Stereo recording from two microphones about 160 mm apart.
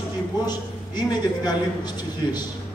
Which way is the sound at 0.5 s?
25° left (ahead or behind).